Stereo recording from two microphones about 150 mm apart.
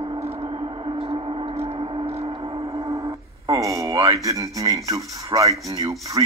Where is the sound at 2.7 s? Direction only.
25° right (ahead or behind).